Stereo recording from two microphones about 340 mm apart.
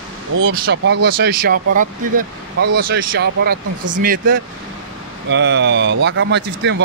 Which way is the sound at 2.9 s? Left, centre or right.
Right.